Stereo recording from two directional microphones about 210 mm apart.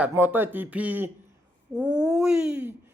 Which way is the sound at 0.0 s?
10° right (ahead or behind).